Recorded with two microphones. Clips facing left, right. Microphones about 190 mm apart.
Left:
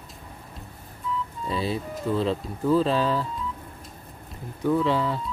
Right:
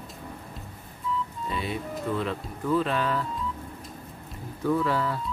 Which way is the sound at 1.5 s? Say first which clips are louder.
Left 5 dB; 30° left (ahead or behind).